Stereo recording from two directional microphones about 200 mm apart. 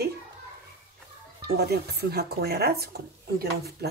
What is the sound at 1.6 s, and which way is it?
Speech, 55° right (ahead or behind).